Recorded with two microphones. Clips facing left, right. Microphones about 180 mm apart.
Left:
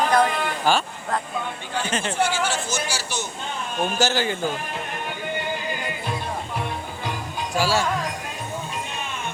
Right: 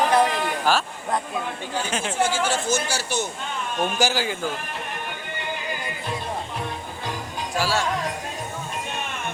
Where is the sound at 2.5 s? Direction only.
50° right (ahead or behind).